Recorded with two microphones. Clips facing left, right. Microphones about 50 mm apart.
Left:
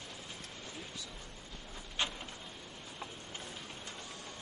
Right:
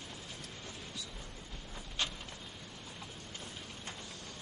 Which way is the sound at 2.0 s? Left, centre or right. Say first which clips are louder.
Left 1 dB; centre.